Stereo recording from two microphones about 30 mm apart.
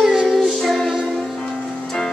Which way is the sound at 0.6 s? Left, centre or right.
Centre.